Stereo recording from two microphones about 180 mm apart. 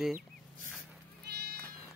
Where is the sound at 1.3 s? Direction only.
65° right (ahead or behind).